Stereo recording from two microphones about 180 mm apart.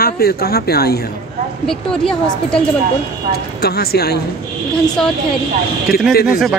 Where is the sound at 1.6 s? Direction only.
5° left (ahead or behind).